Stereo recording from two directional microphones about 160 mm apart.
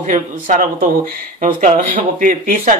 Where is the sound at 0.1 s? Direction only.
55° right (ahead or behind).